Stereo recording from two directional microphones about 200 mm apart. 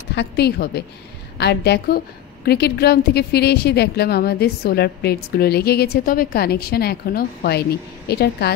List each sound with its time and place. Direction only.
0.1 s a woman's voice: 55° left (ahead or behind)